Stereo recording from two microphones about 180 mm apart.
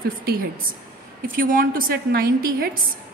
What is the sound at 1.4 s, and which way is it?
A woman's voice, 50° right (ahead or behind).